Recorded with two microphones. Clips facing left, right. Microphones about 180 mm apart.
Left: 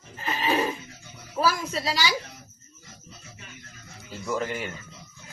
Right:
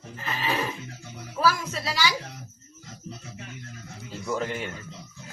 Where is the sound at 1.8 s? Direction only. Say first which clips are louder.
Even; 15° left (ahead or behind).